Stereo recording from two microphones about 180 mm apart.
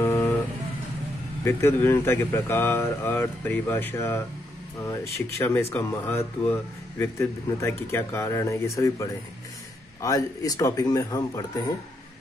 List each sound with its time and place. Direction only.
0.0 s vehicle: 15° left (ahead or behind)
1.4 s speech: 15° left (ahead or behind)
5.4 s speech: 15° left (ahead or behind)